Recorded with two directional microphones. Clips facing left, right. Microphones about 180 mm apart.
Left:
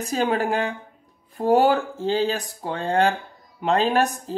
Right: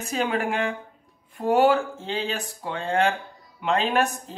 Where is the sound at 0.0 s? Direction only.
35° left (ahead or behind).